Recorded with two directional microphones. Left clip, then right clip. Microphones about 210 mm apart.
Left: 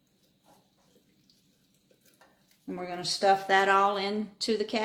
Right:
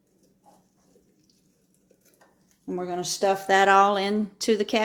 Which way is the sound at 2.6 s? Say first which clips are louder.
Right 4 dB; 30° right (ahead or behind).